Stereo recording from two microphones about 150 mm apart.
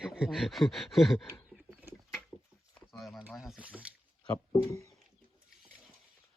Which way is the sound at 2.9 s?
Centre (ahead or behind).